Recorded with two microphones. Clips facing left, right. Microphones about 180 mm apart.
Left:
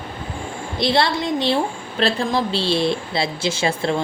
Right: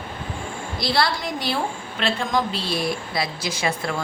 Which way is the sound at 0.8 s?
25° left (ahead or behind).